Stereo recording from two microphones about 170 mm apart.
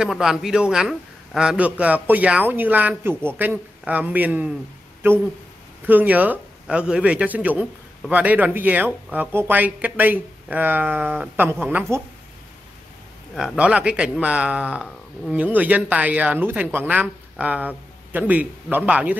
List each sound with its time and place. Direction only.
0.0 s a man's voice: 5° right (ahead or behind)
13.3 s a man's voice: centre (ahead or behind)